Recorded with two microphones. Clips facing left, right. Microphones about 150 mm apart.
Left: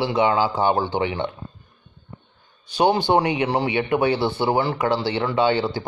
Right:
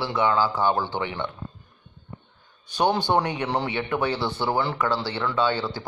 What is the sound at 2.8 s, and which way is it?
Speech, 10° left (ahead or behind).